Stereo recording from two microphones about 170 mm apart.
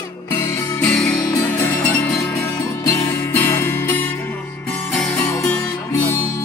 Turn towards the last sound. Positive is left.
turn(degrees=10)  # may be behind; listen again after turning